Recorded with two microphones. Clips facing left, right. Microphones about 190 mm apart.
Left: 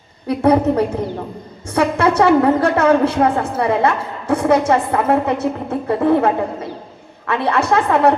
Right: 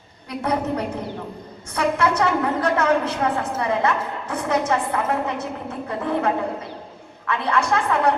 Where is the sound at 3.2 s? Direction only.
45° left (ahead or behind).